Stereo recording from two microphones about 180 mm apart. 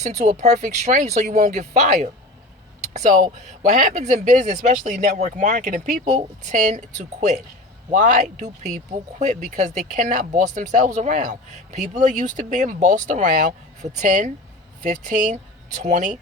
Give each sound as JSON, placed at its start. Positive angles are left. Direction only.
{"t": 0.0, "sound": "speech", "side_deg": -40}
{"t": 3.6, "sound": "speech", "side_deg": -45}
{"t": 7.9, "sound": "speech", "side_deg": -45}